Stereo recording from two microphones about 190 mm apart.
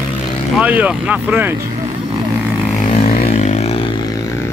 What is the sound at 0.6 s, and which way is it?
Speech, 5° right (ahead or behind).